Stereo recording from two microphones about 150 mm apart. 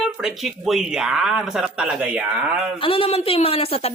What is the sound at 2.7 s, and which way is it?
A woman's voice, 35° left (ahead or behind).